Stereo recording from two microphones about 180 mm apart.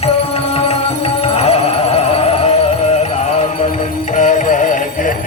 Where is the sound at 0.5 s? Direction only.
35° left (ahead or behind).